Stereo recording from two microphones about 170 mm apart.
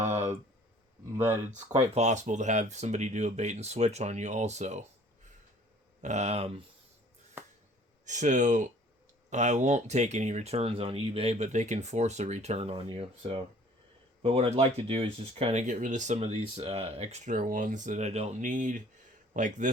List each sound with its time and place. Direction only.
0.0 s a sound: 45° right (ahead or behind)
1.1 s speech: 15° right (ahead or behind)
1.6 s speech: 35° right (ahead or behind)
6.0 s speech: 45° right (ahead or behind)
8.0 s speech: 45° right (ahead or behind)
15.6 s a man's voice: 50° right (ahead or behind)